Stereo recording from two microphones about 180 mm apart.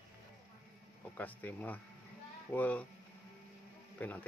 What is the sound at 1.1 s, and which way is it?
Speech, 10° left (ahead or behind).